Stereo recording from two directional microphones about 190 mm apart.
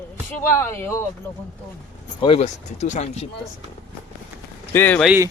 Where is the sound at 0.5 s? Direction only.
15° left (ahead or behind).